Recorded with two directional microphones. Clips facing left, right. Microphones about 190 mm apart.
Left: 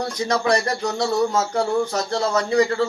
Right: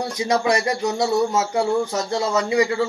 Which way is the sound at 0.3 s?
15° right (ahead or behind).